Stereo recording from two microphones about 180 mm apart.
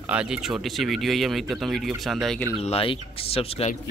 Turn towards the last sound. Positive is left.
turn(degrees=35)  # may be behind; listen again after turning